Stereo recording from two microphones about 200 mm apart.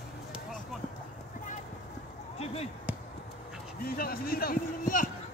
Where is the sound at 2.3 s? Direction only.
30° left (ahead or behind).